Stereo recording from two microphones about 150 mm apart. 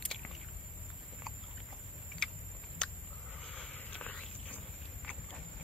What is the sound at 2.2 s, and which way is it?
Vehicle, 5° left (ahead or behind).